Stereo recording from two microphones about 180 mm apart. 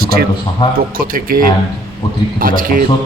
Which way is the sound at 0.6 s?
20° left (ahead or behind).